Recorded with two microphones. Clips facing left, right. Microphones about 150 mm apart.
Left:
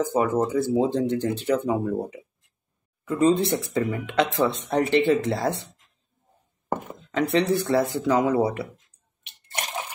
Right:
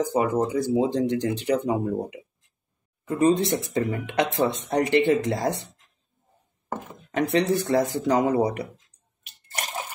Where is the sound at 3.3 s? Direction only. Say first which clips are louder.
Even; 20° right (ahead or behind).